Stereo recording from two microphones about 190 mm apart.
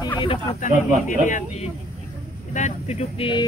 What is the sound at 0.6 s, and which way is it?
Speech, 40° left (ahead or behind).